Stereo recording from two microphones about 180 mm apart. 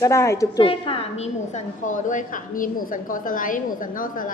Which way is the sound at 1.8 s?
45° left (ahead or behind).